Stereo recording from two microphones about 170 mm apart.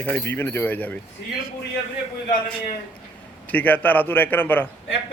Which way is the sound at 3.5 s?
10° left (ahead or behind).